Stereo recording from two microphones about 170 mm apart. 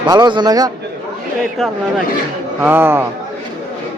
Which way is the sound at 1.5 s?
Centre (ahead or behind).